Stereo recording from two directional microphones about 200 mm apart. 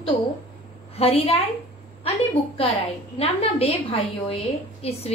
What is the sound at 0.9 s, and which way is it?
Speech, 30° left (ahead or behind).